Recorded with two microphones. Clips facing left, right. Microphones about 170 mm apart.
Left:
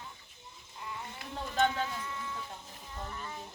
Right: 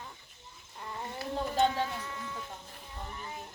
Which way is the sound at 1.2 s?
25° right (ahead or behind).